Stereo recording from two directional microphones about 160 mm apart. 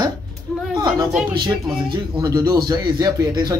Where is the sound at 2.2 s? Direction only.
25° right (ahead or behind).